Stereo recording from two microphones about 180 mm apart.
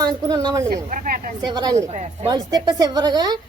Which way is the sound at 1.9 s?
40° right (ahead or behind).